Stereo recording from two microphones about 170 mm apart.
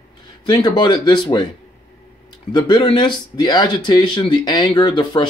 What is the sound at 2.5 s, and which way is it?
Speech, 25° left (ahead or behind).